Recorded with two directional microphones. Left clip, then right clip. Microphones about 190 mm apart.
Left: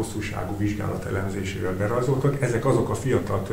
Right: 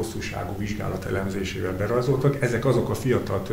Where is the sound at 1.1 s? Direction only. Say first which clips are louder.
Right 1 dB; 35° right (ahead or behind).